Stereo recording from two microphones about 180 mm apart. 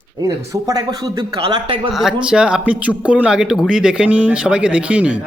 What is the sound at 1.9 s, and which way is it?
A man's voice, centre (ahead or behind).